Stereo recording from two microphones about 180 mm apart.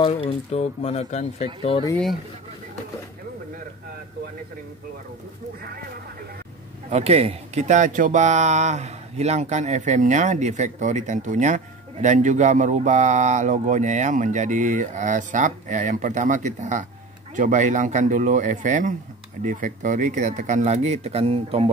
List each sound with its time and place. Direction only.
0.0 s speech: 30° left (ahead or behind)
6.9 s speech: 35° right (ahead or behind)